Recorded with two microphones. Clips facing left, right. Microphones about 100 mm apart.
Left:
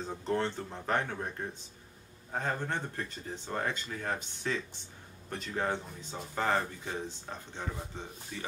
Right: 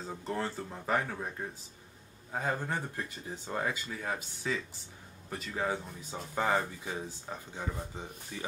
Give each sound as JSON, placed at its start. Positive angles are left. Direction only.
{"t": 0.0, "sound": "speech", "side_deg": -5}